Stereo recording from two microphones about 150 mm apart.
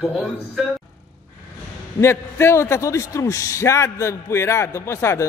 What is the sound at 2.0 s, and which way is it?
A man's voice, 15° left (ahead or behind).